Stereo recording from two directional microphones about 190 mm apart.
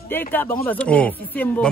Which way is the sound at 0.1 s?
10° left (ahead or behind).